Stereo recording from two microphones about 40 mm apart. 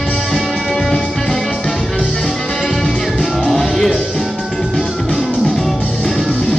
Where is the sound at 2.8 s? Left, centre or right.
Centre.